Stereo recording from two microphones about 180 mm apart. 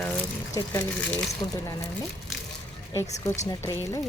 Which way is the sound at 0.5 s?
10° left (ahead or behind).